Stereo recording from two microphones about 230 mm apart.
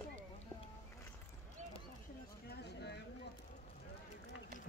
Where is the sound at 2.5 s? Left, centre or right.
Left.